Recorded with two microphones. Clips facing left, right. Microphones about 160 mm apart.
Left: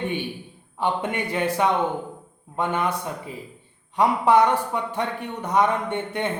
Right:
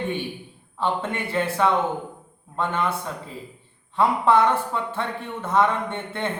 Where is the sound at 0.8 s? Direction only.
15° left (ahead or behind).